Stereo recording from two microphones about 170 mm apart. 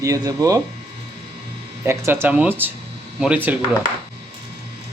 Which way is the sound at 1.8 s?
15° right (ahead or behind).